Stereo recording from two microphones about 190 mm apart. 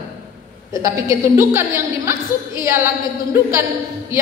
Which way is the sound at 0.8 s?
15° right (ahead or behind).